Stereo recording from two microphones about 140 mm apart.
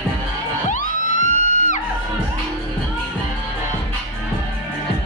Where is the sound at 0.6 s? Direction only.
65° left (ahead or behind).